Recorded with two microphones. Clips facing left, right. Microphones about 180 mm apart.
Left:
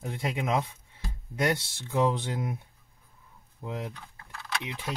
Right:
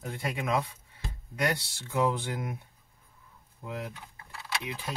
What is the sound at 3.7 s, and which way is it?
Speech, 20° left (ahead or behind).